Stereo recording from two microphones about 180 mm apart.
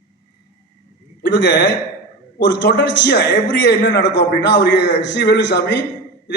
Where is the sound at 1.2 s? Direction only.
75° left (ahead or behind).